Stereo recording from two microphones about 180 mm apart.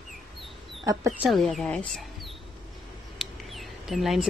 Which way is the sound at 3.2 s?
Centre (ahead or behind).